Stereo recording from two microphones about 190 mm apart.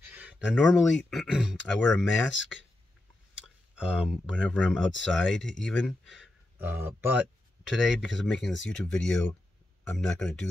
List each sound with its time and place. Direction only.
0.1 s speech: 5° right (ahead or behind)
3.7 s speech: 5° right (ahead or behind)